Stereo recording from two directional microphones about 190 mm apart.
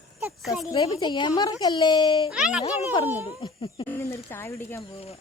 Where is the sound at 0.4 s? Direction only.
Centre (ahead or behind).